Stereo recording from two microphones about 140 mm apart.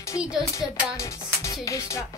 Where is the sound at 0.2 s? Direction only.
5° right (ahead or behind).